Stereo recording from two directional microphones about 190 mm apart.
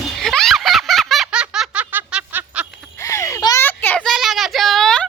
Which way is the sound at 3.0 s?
15° left (ahead or behind).